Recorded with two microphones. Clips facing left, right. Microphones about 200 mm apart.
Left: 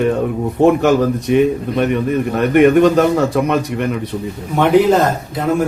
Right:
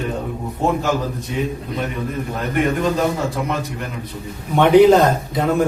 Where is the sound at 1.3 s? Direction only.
70° left (ahead or behind).